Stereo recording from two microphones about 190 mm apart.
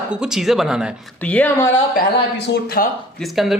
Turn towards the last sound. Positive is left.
turn(degrees=0)  # may be behind; listen again after turning